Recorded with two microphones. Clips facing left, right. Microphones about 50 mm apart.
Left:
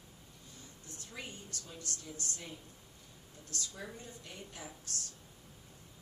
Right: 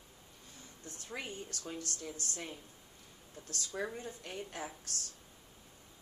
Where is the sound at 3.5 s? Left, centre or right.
Right.